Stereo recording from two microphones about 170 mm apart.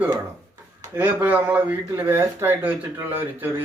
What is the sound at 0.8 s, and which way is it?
Speech, 15° right (ahead or behind).